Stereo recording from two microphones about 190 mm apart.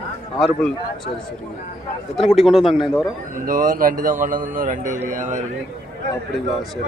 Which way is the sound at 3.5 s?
45° right (ahead or behind).